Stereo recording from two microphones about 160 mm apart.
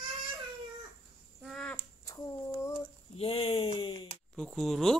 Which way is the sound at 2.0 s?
20° left (ahead or behind).